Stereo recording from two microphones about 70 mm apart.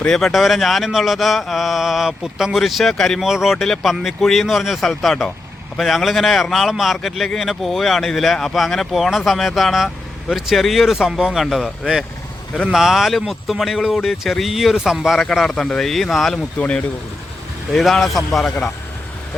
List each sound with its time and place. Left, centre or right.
0.2 s a man's voice: centre
3.2 s a man's voice: centre
3.5 s a man's voice: centre
16.6 s speech: centre
17.7 s a man's voice: centre